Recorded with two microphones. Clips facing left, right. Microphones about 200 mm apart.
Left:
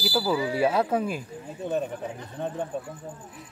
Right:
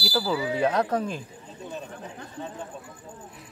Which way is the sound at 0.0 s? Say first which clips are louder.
Left 1 dB; 5° left (ahead or behind).